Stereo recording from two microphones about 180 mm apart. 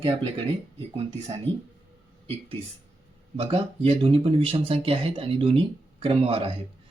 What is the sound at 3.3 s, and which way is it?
Speech, 35° right (ahead or behind).